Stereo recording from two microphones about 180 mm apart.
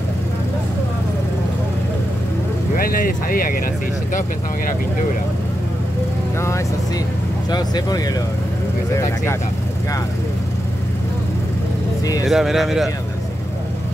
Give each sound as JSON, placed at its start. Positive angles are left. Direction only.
{"t": 2.7, "sound": "speech", "side_deg": 55}
{"t": 7.5, "sound": "speech", "side_deg": 20}
{"t": 12.3, "sound": "speech", "side_deg": 0}